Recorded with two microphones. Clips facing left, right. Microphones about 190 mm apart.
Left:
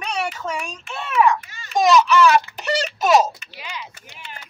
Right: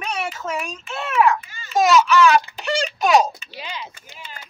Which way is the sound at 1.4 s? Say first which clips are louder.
Even; 75° left (ahead or behind).